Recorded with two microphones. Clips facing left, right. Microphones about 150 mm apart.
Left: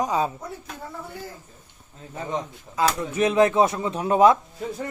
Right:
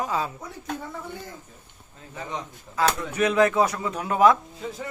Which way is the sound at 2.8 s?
25° left (ahead or behind).